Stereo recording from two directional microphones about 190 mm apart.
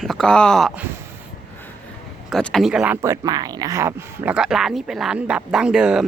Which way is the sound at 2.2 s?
Centre (ahead or behind).